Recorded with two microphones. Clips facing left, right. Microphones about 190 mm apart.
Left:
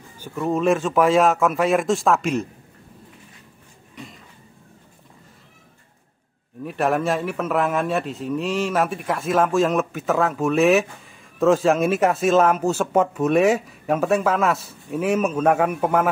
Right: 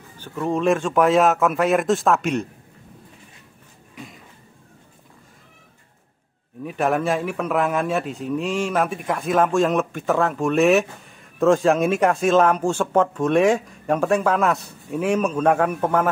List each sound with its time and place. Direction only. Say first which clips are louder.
0.2 s speech: even; 5° left (ahead or behind)
3.9 s a sound: even; centre (ahead or behind)
6.6 s speech: even; centre (ahead or behind)